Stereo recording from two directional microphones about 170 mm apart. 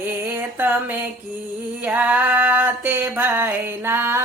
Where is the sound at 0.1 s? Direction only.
10° right (ahead or behind).